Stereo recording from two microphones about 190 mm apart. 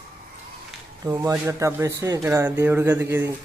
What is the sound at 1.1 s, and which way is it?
Speech, 15° right (ahead or behind).